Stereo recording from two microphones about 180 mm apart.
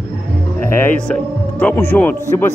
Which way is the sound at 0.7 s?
10° left (ahead or behind).